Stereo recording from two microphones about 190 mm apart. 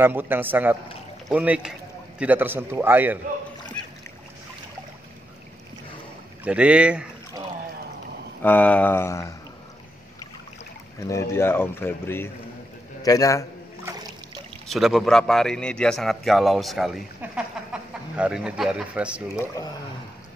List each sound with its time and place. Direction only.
0.0 s a man's voice: 10° right (ahead or behind)
6.4 s a man's voice: 5° right (ahead or behind)
8.4 s speech: 10° left (ahead or behind)
11.0 s speech: 15° left (ahead or behind)
13.8 s boat: 20° right (ahead or behind)
14.7 s a man's voice: centre (ahead or behind)